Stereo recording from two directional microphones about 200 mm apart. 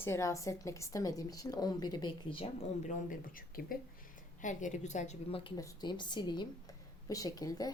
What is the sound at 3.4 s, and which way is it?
A woman's voice, 45° left (ahead or behind).